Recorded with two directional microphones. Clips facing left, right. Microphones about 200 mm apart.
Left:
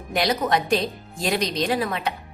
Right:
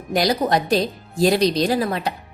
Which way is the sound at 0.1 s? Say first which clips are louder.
Right 3 dB; 35° right (ahead or behind).